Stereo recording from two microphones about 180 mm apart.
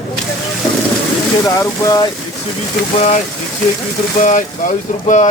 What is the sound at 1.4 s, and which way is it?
Speech, 20° left (ahead or behind).